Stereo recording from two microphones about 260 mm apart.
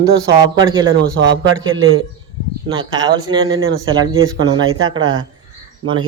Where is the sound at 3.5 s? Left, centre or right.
Right.